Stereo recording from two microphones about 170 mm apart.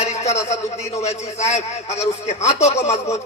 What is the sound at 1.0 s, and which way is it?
Speech, 40° left (ahead or behind).